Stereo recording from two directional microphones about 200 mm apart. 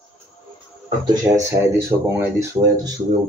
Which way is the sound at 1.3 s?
15° right (ahead or behind).